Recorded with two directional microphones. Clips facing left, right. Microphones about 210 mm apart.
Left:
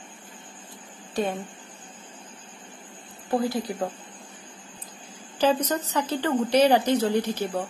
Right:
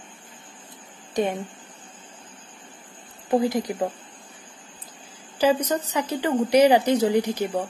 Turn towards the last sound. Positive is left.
turn(degrees=-15)  # may be behind; listen again after turning